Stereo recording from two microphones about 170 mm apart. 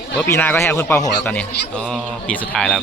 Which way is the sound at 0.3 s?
15° left (ahead or behind).